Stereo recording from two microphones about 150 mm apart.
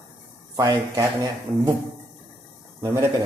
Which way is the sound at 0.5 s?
25° right (ahead or behind).